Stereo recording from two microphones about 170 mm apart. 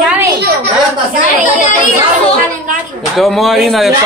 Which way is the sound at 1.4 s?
50° left (ahead or behind).